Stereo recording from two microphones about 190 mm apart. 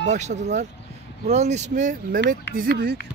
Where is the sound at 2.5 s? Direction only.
55° right (ahead or behind).